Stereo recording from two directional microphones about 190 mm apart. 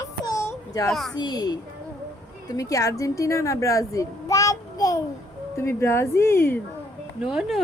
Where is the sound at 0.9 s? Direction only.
Centre (ahead or behind).